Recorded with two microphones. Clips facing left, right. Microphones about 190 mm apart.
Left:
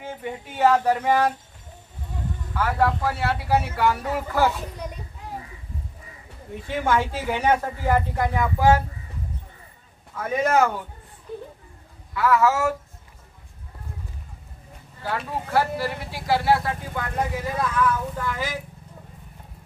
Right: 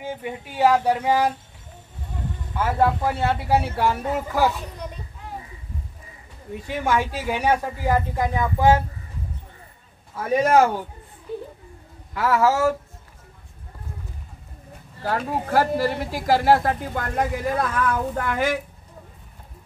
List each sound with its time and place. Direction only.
0.0 s speech: 15° right (ahead or behind)
2.5 s speech: 25° right (ahead or behind)
4.5 s a child's voice: 10° left (ahead or behind)
6.8 s speech: 15° right (ahead or behind)
10.1 s speech: 35° right (ahead or behind)
12.1 s speech: 40° right (ahead or behind)
15.0 s speech: 45° right (ahead or behind); by 18.6 s 60° right (ahead or behind)